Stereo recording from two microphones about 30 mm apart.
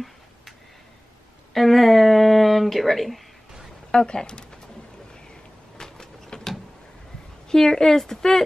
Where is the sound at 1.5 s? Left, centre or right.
Centre.